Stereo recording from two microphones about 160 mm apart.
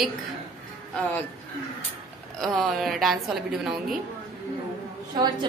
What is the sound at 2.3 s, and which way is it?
A woman's voice, centre (ahead or behind).